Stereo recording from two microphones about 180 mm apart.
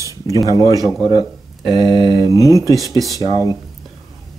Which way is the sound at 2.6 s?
20° right (ahead or behind).